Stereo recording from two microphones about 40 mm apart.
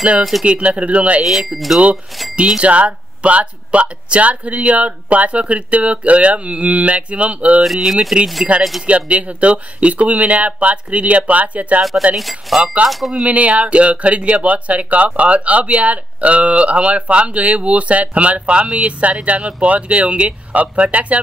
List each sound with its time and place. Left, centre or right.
0.2 s speech: centre
0.5 s speech: right
1.2 s speech: centre
2.3 s speech: right
7.9 s speech: centre
8.8 s speech: right
12.2 s speech: centre
12.8 s speech: right